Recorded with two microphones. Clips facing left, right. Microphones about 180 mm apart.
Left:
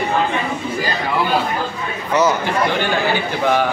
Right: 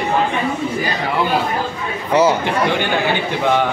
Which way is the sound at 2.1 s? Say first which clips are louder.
Right 2 dB; 30° right (ahead or behind).